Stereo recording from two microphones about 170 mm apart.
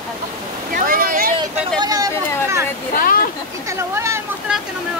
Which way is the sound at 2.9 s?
60° left (ahead or behind).